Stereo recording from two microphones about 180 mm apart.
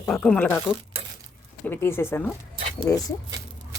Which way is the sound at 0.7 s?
20° left (ahead or behind).